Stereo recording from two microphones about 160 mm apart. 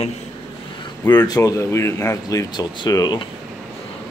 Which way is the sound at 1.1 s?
25° left (ahead or behind).